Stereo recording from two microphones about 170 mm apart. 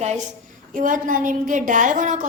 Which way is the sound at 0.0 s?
45° right (ahead or behind).